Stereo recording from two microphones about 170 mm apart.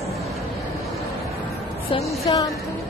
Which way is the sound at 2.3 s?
30° left (ahead or behind).